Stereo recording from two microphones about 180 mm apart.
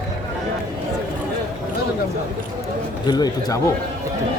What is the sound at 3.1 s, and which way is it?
Speech, 20° left (ahead or behind).